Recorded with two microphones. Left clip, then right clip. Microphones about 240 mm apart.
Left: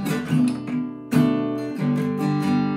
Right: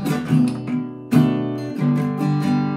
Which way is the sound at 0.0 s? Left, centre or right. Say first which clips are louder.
Right 2 dB; centre.